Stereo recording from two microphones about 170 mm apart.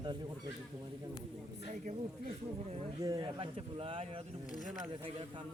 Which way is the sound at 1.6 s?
45° right (ahead or behind).